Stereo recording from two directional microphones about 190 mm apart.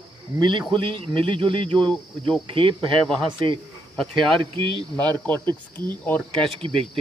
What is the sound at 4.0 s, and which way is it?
Speech, centre (ahead or behind).